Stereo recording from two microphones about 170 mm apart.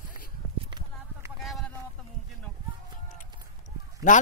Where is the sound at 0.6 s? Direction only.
25° right (ahead or behind).